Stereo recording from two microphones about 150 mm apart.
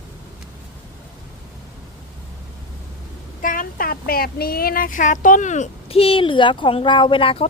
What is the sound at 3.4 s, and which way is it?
A woman's voice, 65° left (ahead or behind).